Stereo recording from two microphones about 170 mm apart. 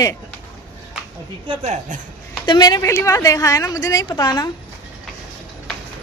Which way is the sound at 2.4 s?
25° left (ahead or behind).